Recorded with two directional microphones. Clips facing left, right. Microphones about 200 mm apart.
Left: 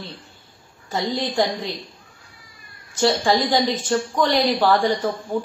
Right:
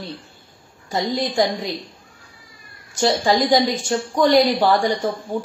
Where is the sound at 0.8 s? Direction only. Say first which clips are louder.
Right 2 dB; 15° right (ahead or behind).